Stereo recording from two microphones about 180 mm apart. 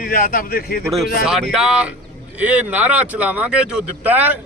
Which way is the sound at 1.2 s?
Centre (ahead or behind).